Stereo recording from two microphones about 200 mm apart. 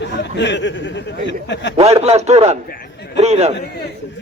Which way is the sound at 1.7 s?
30° right (ahead or behind).